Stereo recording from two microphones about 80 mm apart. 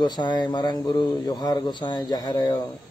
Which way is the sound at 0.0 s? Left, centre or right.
Left.